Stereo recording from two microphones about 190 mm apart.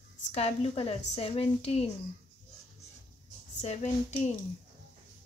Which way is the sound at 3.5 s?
35° left (ahead or behind).